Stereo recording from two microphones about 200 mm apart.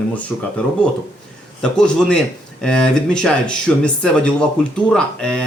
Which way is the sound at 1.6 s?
5° left (ahead or behind).